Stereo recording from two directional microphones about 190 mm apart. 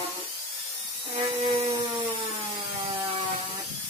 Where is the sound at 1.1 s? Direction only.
30° right (ahead or behind).